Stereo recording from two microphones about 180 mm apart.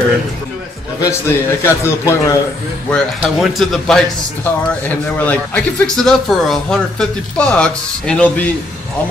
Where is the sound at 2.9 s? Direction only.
Centre (ahead or behind).